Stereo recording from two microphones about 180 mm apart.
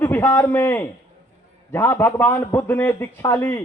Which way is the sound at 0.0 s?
10° left (ahead or behind).